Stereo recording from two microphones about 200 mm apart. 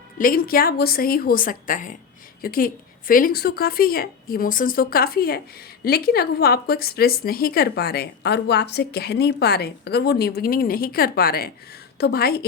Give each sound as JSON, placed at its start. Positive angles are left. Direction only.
{"t": 0.2, "sound": "a woman's voice", "side_deg": 45}